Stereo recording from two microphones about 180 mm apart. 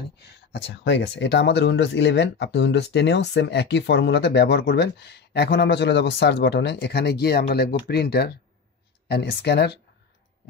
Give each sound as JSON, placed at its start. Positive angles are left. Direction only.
{"t": 0.2, "sound": "speech", "side_deg": 70}